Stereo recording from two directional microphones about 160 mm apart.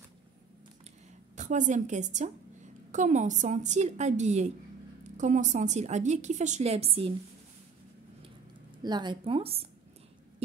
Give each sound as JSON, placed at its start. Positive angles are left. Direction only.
{"t": 1.3, "sound": "a woman's voice", "side_deg": -50}
{"t": 8.8, "sound": "a woman's voice", "side_deg": -25}